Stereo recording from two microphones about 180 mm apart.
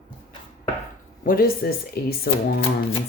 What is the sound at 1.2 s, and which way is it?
Speech, 55° left (ahead or behind).